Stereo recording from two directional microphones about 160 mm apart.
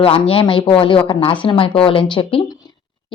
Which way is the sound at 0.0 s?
35° left (ahead or behind).